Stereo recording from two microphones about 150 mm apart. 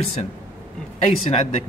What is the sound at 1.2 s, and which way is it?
Speech, 45° left (ahead or behind).